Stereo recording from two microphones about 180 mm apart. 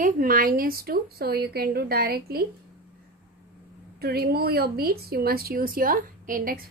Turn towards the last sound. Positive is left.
turn(degrees=-50)  # may be behind; listen again after turning